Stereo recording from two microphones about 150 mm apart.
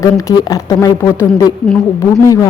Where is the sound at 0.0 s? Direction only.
20° left (ahead or behind).